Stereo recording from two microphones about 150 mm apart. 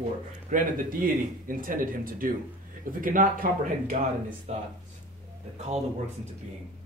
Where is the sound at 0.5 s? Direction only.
65° right (ahead or behind).